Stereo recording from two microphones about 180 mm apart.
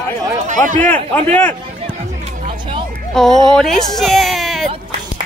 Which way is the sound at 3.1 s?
Centre (ahead or behind).